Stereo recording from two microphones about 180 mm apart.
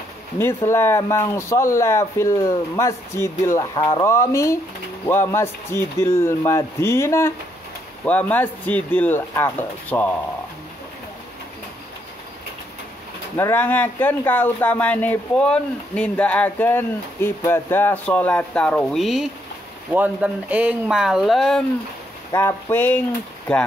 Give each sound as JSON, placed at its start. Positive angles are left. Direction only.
{"t": 0.4, "sound": "speech", "side_deg": 15}
{"t": 13.4, "sound": "speech", "side_deg": 10}
{"t": 22.3, "sound": "speech", "side_deg": 15}